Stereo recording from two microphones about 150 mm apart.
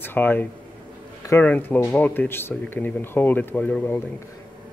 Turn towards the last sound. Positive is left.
turn(degrees=10)  # may be behind; listen again after turning